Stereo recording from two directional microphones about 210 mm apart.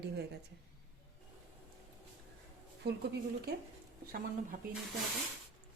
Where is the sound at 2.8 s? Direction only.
50° right (ahead or behind).